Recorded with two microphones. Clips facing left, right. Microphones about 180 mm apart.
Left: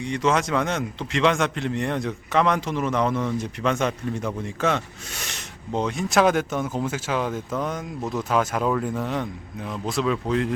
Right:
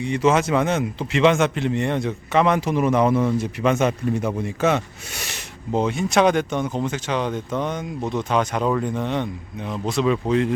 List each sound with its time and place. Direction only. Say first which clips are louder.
0.0 s speech: right 4 dB; 5° right (ahead or behind)